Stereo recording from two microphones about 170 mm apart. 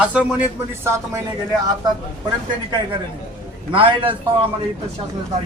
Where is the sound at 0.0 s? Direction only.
5° right (ahead or behind).